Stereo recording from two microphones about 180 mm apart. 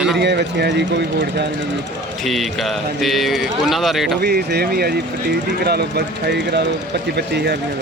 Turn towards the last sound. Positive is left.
turn(degrees=-70)  # may be behind; listen again after turning